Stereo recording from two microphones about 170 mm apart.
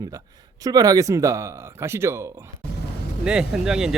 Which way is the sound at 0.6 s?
20° right (ahead or behind).